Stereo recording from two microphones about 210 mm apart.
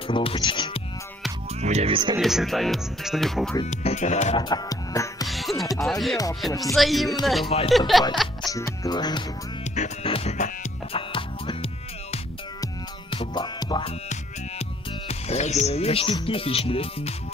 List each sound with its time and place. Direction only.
0.1 s speech: 25° left (ahead or behind)
1.6 s speech: 30° right (ahead or behind)
2.1 s speech: centre (ahead or behind)
3.6 s speech: 30° left (ahead or behind)
4.4 s music: 20° left (ahead or behind)
5.3 s music: centre (ahead or behind)
5.8 s speech: centre (ahead or behind)
7.4 s speech: 25° left (ahead or behind)
7.7 s speech: centre (ahead or behind)
8.5 s speech: 15° left (ahead or behind)
9.8 s music: 30° left (ahead or behind)
15.0 s speech: 30° left (ahead or behind)